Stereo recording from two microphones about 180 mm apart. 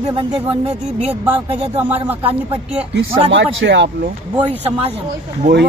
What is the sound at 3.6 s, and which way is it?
Speech, 75° right (ahead or behind).